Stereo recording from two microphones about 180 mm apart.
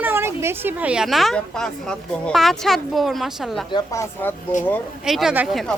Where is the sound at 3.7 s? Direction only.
15° left (ahead or behind).